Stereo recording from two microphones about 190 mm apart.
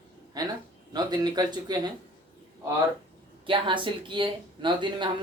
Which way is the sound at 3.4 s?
25° right (ahead or behind).